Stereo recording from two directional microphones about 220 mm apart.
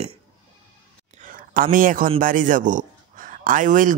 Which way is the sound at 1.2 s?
40° right (ahead or behind).